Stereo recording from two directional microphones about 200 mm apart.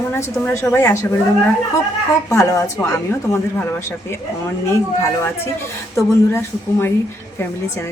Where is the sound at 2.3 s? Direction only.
15° left (ahead or behind).